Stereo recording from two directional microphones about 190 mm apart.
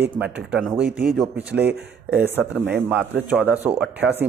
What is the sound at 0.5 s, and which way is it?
Speech, 5° right (ahead or behind).